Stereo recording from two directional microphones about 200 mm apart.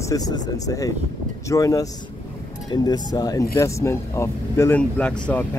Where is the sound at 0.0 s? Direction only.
15° left (ahead or behind).